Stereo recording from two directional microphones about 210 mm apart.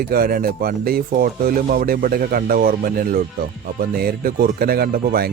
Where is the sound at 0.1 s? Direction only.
45° right (ahead or behind).